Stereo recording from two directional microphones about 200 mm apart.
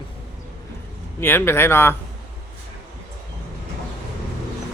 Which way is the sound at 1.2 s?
10° left (ahead or behind).